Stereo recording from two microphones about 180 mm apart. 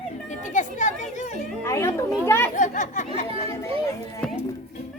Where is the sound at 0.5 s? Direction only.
40° left (ahead or behind).